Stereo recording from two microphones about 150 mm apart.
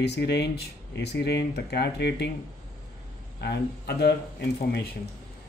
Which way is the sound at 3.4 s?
90° left.